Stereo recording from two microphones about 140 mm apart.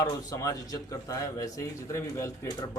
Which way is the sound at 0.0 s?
25° left (ahead or behind).